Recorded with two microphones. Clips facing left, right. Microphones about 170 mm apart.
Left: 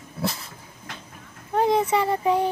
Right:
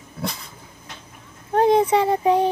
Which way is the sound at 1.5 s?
20° right (ahead or behind).